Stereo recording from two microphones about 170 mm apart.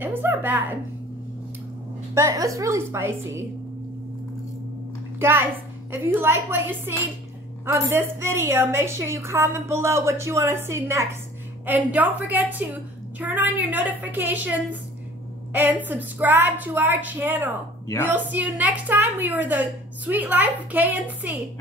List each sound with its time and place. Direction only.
0.0 s a woman's voice: 10° right (ahead or behind)
2.1 s a woman's voice: 20° right (ahead or behind)
5.2 s a woman's voice: 15° right (ahead or behind)